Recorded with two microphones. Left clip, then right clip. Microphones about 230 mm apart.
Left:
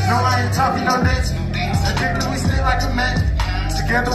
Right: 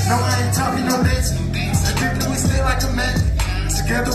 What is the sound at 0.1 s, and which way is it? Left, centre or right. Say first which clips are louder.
Music: left 2 dB; right.